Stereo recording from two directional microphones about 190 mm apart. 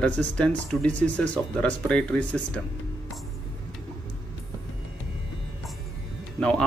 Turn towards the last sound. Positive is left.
turn(degrees=5)  # may be behind; listen again after turning